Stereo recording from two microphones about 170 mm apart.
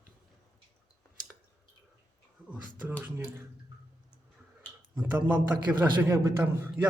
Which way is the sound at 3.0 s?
15° right (ahead or behind).